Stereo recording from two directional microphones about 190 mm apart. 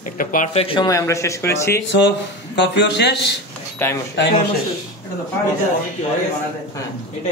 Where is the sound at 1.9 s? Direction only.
65° left (ahead or behind).